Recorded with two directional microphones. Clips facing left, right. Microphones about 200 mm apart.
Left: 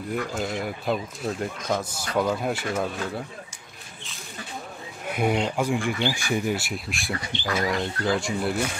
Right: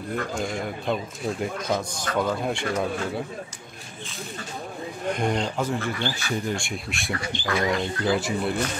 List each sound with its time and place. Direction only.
0.1 s a man's voice: 5° left (ahead or behind)
5.0 s a man's voice: 5° left (ahead or behind)